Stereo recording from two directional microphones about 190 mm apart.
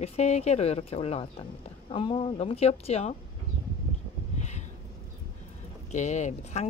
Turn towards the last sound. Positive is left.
turn(degrees=40)  # may be behind; listen again after turning